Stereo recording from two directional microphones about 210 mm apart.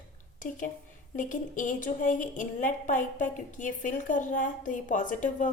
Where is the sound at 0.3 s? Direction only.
40° left (ahead or behind).